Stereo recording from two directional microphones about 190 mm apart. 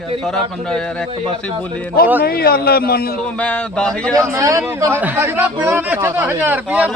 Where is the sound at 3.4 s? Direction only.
5° left (ahead or behind).